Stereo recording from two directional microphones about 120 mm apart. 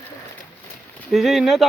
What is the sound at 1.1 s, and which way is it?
Speech, centre (ahead or behind).